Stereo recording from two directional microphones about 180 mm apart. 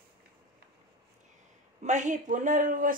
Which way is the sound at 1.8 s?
45° right (ahead or behind).